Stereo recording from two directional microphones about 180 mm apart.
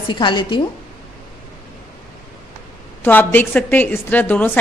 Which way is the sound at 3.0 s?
10° left (ahead or behind).